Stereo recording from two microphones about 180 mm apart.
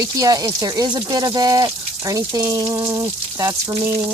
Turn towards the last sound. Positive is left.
turn(degrees=-15)  # may be behind; listen again after turning